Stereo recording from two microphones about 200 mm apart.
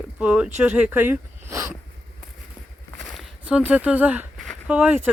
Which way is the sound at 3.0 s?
Centre (ahead or behind).